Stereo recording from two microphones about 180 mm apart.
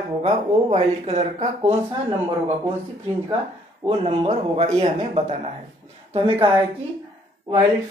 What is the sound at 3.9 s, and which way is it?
Speech, 35° right (ahead or behind).